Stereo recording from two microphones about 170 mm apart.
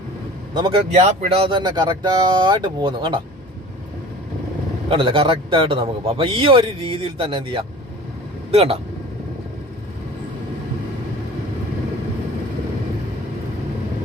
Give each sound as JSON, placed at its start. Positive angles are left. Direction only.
{"t": 0.5, "sound": "speech", "side_deg": -30}
{"t": 4.9, "sound": "a man's voice", "side_deg": -30}